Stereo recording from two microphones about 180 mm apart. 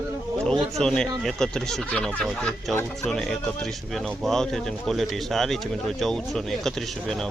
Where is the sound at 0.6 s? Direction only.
5° left (ahead or behind).